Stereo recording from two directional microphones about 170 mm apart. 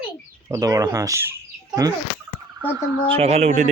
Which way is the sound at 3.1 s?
35° right (ahead or behind).